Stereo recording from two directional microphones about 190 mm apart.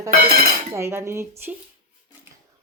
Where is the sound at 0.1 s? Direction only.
50° right (ahead or behind).